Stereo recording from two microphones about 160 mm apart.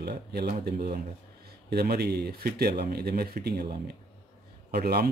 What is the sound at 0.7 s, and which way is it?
Speech, 75° right (ahead or behind).